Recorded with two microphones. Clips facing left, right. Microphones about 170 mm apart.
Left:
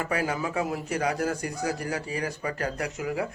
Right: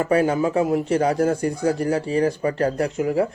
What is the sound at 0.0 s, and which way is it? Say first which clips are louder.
Speech: right 9 dB; 30° right (ahead or behind).